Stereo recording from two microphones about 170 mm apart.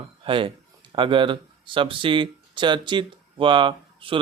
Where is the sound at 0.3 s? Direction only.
30° right (ahead or behind).